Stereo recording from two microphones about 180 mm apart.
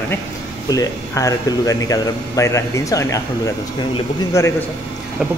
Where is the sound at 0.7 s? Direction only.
20° left (ahead or behind).